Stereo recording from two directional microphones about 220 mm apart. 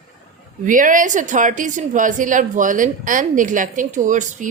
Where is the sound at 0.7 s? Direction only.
35° right (ahead or behind).